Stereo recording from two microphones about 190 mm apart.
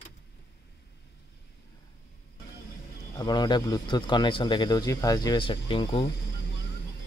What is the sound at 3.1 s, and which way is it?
Speech, 20° left (ahead or behind).